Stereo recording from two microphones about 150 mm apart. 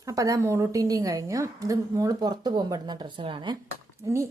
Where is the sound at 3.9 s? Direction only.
20° right (ahead or behind).